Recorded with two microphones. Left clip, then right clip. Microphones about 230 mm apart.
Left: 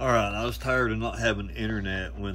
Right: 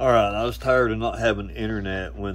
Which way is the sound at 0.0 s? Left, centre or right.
Centre.